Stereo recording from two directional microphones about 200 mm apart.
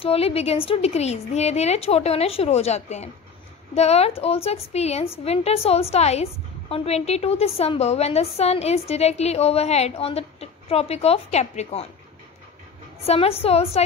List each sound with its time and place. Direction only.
0.0 s a woman's voice: 30° left (ahead or behind)
13.0 s a woman's voice: 30° left (ahead or behind)